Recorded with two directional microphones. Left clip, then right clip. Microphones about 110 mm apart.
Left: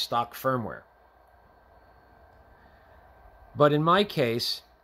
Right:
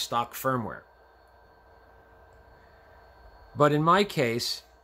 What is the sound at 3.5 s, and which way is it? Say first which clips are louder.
Speech: even; 15° left (ahead or behind).